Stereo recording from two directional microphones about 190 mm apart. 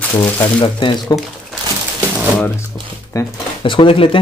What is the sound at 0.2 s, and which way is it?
Speech, 25° left (ahead or behind).